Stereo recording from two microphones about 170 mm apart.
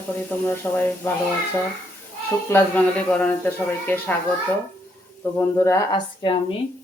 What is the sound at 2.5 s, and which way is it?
Speech, 10° left (ahead or behind).